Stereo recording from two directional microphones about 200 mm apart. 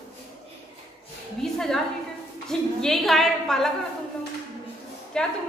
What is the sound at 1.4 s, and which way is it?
A woman's voice, centre (ahead or behind).